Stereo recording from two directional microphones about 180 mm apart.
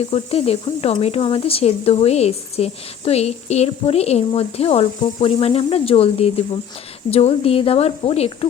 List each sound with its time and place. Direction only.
0.1 s speech: 35° left (ahead or behind)